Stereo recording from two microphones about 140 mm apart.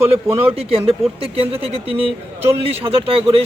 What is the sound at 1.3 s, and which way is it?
Speech, 45° right (ahead or behind).